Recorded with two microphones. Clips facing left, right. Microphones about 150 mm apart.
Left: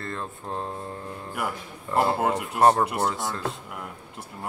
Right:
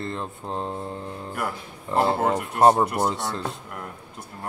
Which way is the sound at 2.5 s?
20° right (ahead or behind).